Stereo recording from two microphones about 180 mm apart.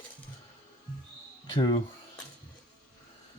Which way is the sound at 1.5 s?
25° left (ahead or behind).